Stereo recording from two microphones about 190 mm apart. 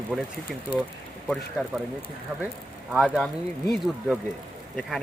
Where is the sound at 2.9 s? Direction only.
Centre (ahead or behind).